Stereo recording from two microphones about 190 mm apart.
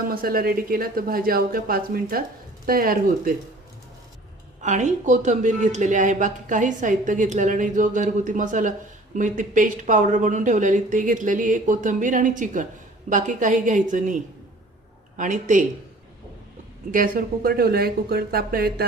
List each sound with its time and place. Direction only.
0.1 s speech: 50° right (ahead or behind)
4.6 s a woman's voice: 40° right (ahead or behind)
15.2 s a woman's voice: 40° right (ahead or behind)
16.9 s speech: 50° right (ahead or behind)